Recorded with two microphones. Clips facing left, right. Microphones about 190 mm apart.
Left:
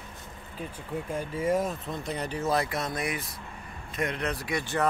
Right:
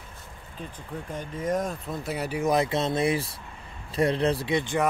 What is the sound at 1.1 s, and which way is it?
Speech, 5° left (ahead or behind).